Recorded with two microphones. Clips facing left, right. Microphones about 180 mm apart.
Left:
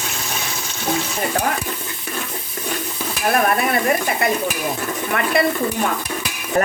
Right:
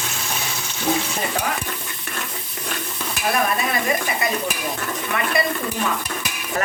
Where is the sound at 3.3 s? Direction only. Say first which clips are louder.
Left 4 dB; 60° left (ahead or behind).